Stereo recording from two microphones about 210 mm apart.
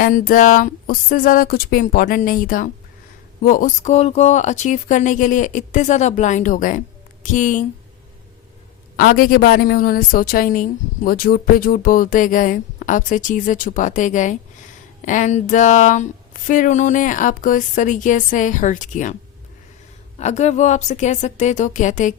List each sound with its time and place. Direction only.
0.0 s a woman's voice: 40° left (ahead or behind)
9.0 s a woman's voice: 40° left (ahead or behind)
20.1 s a woman's voice: 30° left (ahead or behind)